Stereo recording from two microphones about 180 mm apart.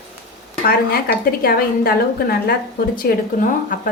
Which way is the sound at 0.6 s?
55° left (ahead or behind).